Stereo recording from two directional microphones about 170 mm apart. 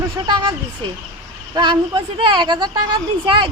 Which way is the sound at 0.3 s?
25° right (ahead or behind).